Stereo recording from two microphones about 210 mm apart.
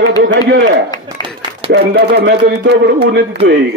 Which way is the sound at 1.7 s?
50° right (ahead or behind).